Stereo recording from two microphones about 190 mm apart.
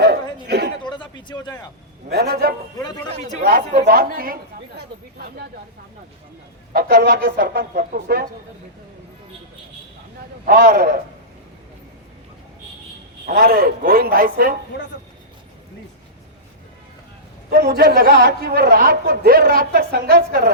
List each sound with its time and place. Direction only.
0.0 s a sound: 60° right (ahead or behind)
0.9 s a sound: 25° left (ahead or behind)
2.0 s a man's voice: 55° right (ahead or behind)
2.7 s speech: 20° left (ahead or behind)
3.1 s speech: 35° right (ahead or behind)
3.4 s a man's voice: 50° right (ahead or behind)
6.7 s a man's voice: 50° right (ahead or behind)
10.4 s a man's voice: 50° right (ahead or behind)
13.2 s a man's voice: 50° right (ahead or behind)
17.5 s a man's voice: 55° right (ahead or behind)